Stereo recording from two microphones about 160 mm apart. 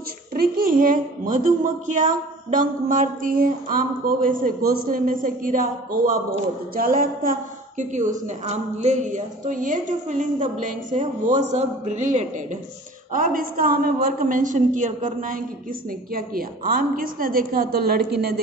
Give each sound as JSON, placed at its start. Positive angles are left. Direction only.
{"t": 0.3, "sound": "a woman's voice", "side_deg": -65}
{"t": 13.1, "sound": "a woman's voice", "side_deg": -60}